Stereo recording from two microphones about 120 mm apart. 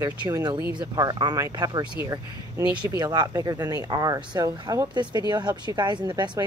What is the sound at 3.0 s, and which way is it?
Speech, 35° right (ahead or behind).